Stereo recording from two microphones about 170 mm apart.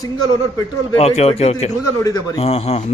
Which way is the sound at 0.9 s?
40° left (ahead or behind).